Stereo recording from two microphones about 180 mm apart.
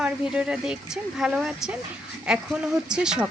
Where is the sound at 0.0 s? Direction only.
5° right (ahead or behind).